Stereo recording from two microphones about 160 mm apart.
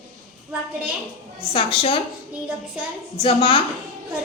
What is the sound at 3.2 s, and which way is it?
Speech, 35° left (ahead or behind).